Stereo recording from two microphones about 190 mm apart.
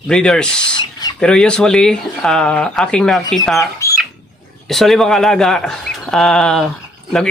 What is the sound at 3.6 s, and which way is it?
Speech, 15° left (ahead or behind).